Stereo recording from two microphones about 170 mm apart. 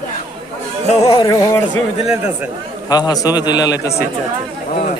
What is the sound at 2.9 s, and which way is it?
A man's voice, 20° left (ahead or behind).